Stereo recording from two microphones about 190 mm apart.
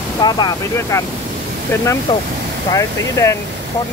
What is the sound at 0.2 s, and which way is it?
Speech, 20° left (ahead or behind).